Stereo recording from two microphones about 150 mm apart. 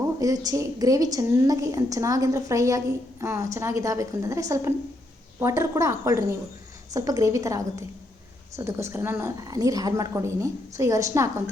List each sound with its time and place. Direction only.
0.2 s a woman's voice: 25° right (ahead or behind)